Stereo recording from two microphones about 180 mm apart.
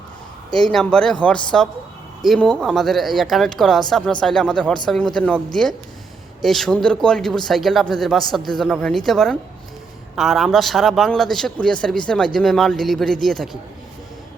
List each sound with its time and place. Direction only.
0.5 s speech: 5° left (ahead or behind)
6.4 s speech: centre (ahead or behind)